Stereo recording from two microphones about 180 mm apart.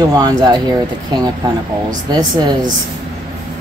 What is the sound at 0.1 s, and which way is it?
Speech, 20° right (ahead or behind).